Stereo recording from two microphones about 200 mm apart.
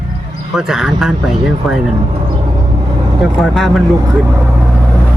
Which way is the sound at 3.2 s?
Centre (ahead or behind).